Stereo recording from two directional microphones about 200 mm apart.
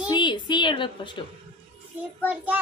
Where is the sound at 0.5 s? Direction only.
25° left (ahead or behind).